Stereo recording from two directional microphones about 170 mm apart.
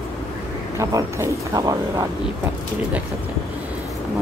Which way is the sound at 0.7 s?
20° right (ahead or behind).